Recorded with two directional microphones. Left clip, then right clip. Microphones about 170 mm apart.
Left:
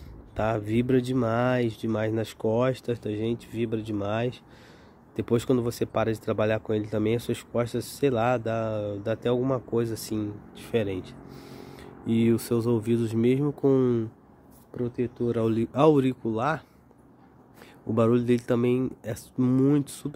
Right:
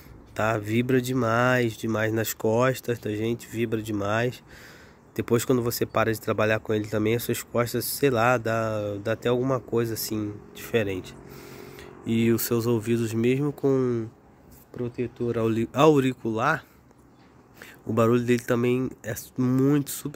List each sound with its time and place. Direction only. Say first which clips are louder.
0.4 s speech: right 1 dB; 5° left (ahead or behind)